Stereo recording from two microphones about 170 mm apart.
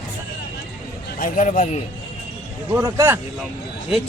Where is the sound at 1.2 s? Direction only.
50° left (ahead or behind).